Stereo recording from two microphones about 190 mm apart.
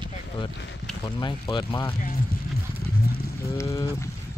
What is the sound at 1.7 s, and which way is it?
Speech, 15° left (ahead or behind).